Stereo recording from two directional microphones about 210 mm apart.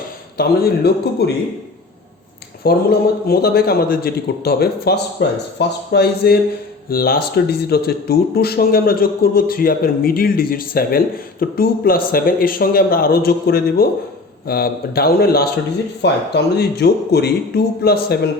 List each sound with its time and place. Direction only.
0.3 s speech: 45° left (ahead or behind)
2.6 s speech: 45° left (ahead or behind)